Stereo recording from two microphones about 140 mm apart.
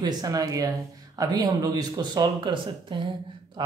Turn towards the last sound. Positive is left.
turn(degrees=-35)  # may be behind; listen again after turning